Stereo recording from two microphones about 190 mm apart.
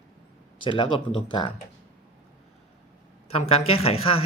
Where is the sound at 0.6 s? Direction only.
25° left (ahead or behind).